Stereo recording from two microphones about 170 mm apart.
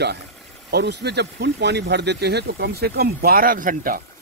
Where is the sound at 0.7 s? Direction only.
75° right (ahead or behind).